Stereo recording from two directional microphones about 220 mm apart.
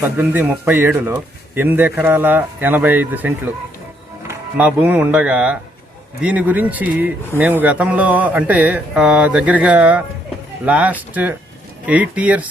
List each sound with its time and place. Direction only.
0.0 s a man's voice: 10° right (ahead or behind)